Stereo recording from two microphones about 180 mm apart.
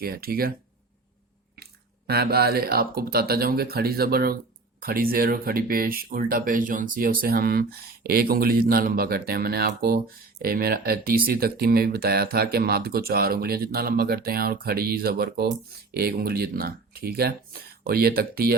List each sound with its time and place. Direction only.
0.0 s speech: 55° right (ahead or behind)
2.0 s speech: 60° right (ahead or behind)